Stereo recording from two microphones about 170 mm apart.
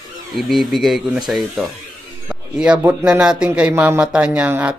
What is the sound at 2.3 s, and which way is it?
Music, 5° right (ahead or behind).